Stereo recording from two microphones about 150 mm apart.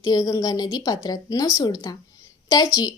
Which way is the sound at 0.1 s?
25° left (ahead or behind).